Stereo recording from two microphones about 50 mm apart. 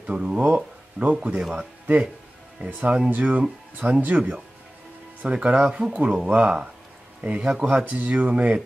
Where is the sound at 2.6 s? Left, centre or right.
Right.